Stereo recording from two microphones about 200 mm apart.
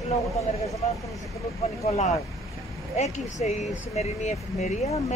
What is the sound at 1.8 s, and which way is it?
Speech, 30° left (ahead or behind).